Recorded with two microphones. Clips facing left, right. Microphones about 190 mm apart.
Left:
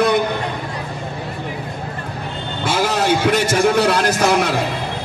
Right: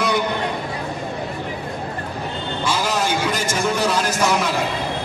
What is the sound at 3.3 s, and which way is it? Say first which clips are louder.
Speech: left 6 dB; 65° left (ahead or behind).